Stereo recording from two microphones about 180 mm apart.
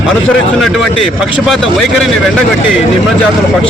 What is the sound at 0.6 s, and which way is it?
A man's voice, centre (ahead or behind).